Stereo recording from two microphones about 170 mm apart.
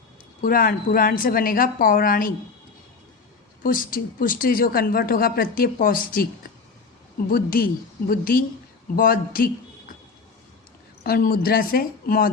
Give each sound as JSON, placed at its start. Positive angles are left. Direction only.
{"t": 0.4, "sound": "a woman's voice", "side_deg": 55}
{"t": 3.6, "sound": "a woman's voice", "side_deg": 55}
{"t": 7.3, "sound": "a woman's voice", "side_deg": 60}
{"t": 11.0, "sound": "a woman's voice", "side_deg": 60}